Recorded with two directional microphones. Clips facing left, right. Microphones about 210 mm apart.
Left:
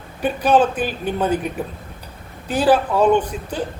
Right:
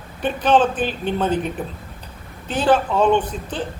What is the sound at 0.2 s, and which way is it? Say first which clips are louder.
A man's voice: left 1 dB; 10° left (ahead or behind).